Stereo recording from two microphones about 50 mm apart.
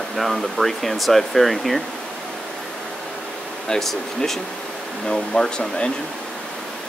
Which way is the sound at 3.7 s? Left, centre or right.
Centre.